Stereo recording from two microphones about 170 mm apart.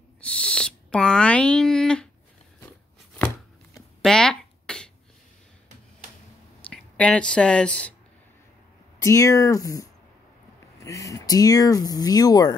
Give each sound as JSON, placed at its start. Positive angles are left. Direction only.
{"t": 0.2, "sound": "owl", "side_deg": 5}
{"t": 4.0, "sound": "a sound", "side_deg": 5}
{"t": 6.7, "sound": "speech", "side_deg": 5}
{"t": 9.0, "sound": "speech", "side_deg": 20}